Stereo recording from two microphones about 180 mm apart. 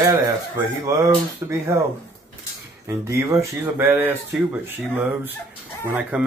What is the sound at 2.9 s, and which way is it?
Speech, 15° right (ahead or behind).